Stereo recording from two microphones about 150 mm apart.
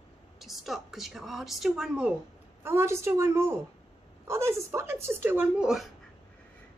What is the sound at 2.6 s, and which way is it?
A woman's voice, 15° right (ahead or behind).